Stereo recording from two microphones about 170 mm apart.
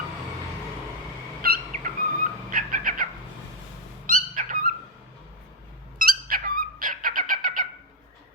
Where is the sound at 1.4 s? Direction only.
60° right (ahead or behind).